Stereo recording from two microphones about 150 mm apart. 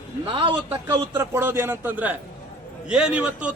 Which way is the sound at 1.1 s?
15° right (ahead or behind).